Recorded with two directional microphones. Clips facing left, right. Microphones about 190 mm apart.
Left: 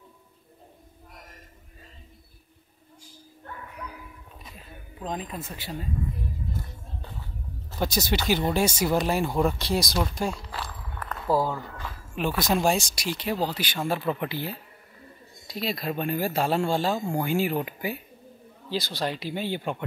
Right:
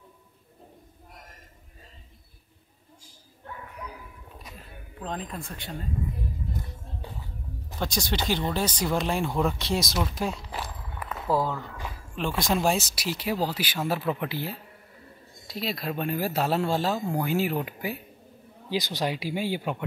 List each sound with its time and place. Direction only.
5.0 s speech: 5° left (ahead or behind)
7.8 s speech: 5° left (ahead or behind)
10.5 s walk: 15° right (ahead or behind)
11.1 s speech: centre (ahead or behind)
18.7 s speech: 15° right (ahead or behind)